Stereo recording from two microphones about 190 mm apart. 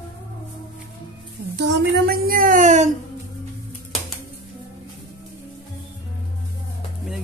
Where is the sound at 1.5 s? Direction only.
60° right (ahead or behind); by 2.9 s 40° right (ahead or behind).